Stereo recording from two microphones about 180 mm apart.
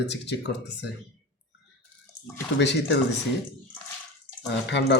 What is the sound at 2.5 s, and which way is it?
Speech, 75° left (ahead or behind).